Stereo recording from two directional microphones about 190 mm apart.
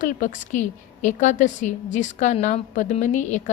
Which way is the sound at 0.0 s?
40° left (ahead or behind).